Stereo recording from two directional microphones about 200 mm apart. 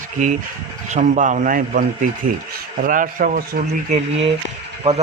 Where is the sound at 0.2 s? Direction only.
40° right (ahead or behind).